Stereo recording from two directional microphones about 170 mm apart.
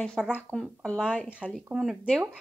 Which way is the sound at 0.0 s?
5° left (ahead or behind).